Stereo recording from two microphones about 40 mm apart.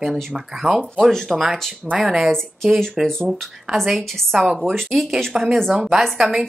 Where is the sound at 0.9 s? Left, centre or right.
Centre.